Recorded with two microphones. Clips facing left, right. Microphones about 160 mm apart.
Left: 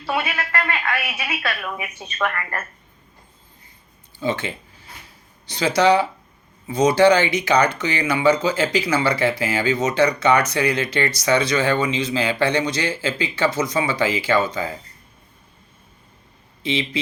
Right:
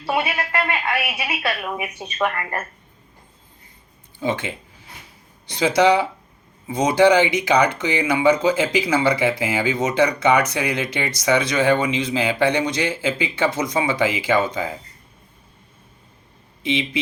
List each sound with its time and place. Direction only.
0.0 s a woman's voice: 15° right (ahead or behind)
4.2 s speech: 15° right (ahead or behind)
5.5 s speech: 20° right (ahead or behind)
16.6 s speech: 20° right (ahead or behind)